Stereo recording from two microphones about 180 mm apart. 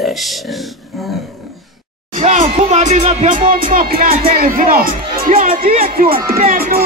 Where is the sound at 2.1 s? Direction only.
35° right (ahead or behind).